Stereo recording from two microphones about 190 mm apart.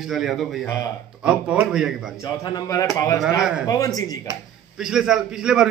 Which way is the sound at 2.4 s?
20° left (ahead or behind).